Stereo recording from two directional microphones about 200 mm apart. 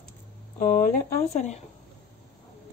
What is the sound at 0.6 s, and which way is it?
Speech, 40° left (ahead or behind).